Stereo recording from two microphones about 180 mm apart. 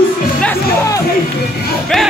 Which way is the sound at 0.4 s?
15° left (ahead or behind).